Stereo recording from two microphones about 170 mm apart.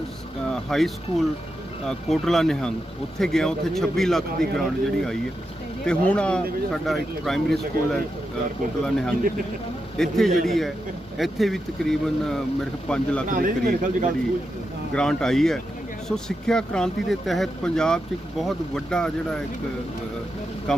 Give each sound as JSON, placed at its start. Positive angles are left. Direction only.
{"t": 0.4, "sound": "speech", "side_deg": 5}
{"t": 13.2, "sound": "a man's voice", "side_deg": -55}
{"t": 14.9, "sound": "speech", "side_deg": 5}
{"t": 20.7, "sound": "speech", "side_deg": 5}